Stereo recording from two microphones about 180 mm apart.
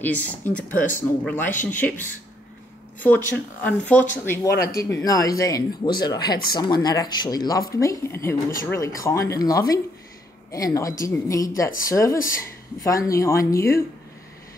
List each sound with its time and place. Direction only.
0.0 s speech: 10° left (ahead or behind)
1.5 s speech: 45° left (ahead or behind)
1.8 s speech: 10° left (ahead or behind)